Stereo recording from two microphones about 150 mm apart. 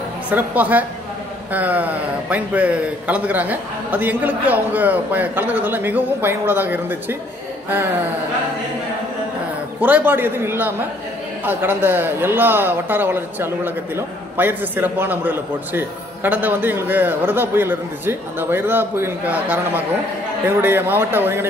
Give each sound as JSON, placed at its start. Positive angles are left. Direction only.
{"t": 0.3, "sound": "a man's voice", "side_deg": -10}
{"t": 9.8, "sound": "a man's voice", "side_deg": -10}